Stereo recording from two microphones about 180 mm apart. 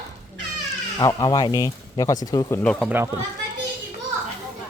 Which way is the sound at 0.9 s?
20° left (ahead or behind).